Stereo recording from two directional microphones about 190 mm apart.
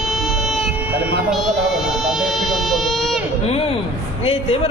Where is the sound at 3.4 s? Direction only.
30° left (ahead or behind).